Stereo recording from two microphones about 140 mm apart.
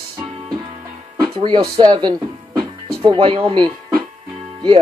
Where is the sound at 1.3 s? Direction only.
35° right (ahead or behind).